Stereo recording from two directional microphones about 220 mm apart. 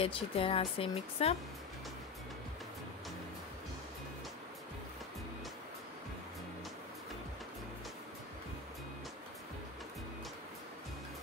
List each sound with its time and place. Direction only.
0.0 s speech: 25° left (ahead or behind)